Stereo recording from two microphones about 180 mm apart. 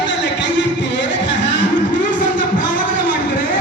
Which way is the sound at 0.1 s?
80° left.